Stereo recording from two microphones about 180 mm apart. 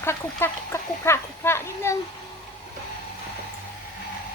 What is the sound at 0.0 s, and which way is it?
Speech, 15° left (ahead or behind).